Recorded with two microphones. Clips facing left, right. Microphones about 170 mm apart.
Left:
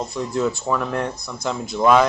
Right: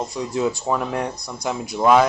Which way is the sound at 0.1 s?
15° right (ahead or behind).